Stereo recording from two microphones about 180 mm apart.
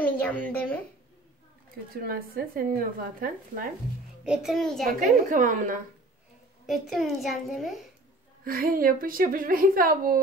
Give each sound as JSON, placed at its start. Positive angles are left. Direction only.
{"t": 0.0, "sound": "a woman's voice", "side_deg": 10}
{"t": 2.0, "sound": "a woman's voice", "side_deg": -55}
{"t": 4.2, "sound": "a child's voice", "side_deg": -5}
{"t": 4.8, "sound": "a woman's voice", "side_deg": -45}
{"t": 6.6, "sound": "a child's voice", "side_deg": 0}
{"t": 8.5, "sound": "a woman's voice", "side_deg": -55}